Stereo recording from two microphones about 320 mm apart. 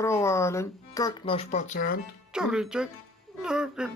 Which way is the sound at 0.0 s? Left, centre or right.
Centre.